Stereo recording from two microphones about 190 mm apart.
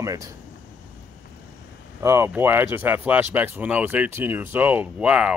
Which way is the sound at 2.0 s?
15° right (ahead or behind).